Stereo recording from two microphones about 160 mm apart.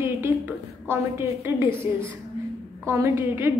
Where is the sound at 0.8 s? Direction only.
15° right (ahead or behind).